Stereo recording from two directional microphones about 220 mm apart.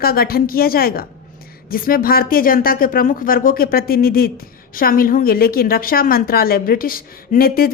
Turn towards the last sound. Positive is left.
turn(degrees=40)  # may be behind; listen again after turning